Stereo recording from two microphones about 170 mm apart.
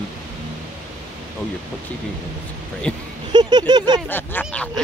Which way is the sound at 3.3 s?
25° right (ahead or behind).